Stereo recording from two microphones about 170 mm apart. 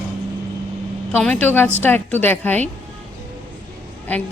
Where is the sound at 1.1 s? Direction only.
5° left (ahead or behind).